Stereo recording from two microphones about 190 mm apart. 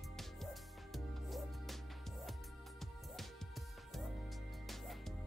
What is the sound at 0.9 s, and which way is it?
Music, centre (ahead or behind).